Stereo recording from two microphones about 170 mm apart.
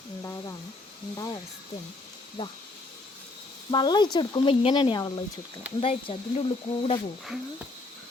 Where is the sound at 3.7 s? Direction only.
25° left (ahead or behind).